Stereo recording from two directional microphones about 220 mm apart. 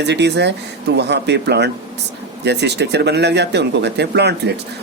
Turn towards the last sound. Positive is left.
turn(degrees=-50)  # may be behind; listen again after turning